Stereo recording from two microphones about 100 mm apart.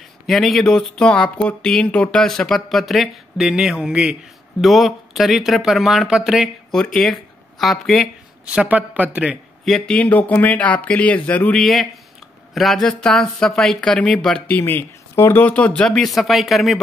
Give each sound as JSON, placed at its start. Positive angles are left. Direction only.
{"t": 0.3, "sound": "speech", "side_deg": 0}
{"t": 8.5, "sound": "speech", "side_deg": -15}
{"t": 9.7, "sound": "speech", "side_deg": 10}
{"t": 11.6, "sound": "speech", "side_deg": 0}
{"t": 14.5, "sound": "speech", "side_deg": 20}
{"t": 15.4, "sound": "speech", "side_deg": 15}